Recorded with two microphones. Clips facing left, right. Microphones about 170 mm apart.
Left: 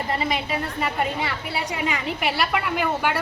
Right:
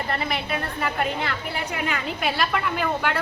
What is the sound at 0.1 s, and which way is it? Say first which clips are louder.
A woman's voice: left 3 dB; 15° left (ahead or behind).